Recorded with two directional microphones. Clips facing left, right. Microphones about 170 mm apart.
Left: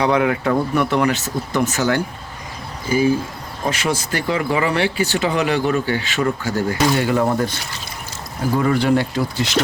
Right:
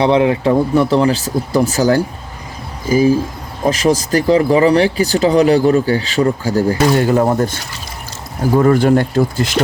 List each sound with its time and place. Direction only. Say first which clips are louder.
0.0 s speech: right 5 dB; 25° right (ahead or behind)
3.7 s speech: right 8 dB; 35° right (ahead or behind)
8.5 s speech: right 6 dB; 45° right (ahead or behind)